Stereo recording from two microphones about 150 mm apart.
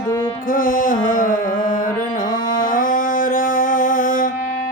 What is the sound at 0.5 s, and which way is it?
Music, 65° left (ahead or behind).